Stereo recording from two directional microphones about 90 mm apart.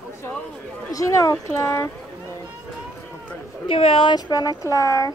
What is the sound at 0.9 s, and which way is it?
Speech, 40° left (ahead or behind).